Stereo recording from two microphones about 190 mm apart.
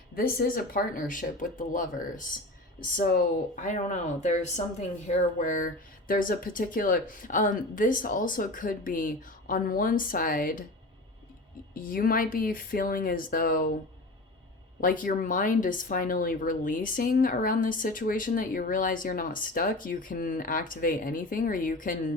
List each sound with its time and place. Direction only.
0.1 s speech: 50° left (ahead or behind)
11.7 s speech: 50° left (ahead or behind)
14.8 s speech: 45° left (ahead or behind)